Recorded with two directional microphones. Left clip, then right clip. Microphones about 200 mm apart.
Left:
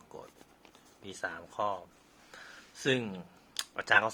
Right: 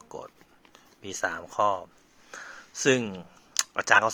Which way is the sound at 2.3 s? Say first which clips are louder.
Right 9 dB; 30° right (ahead or behind).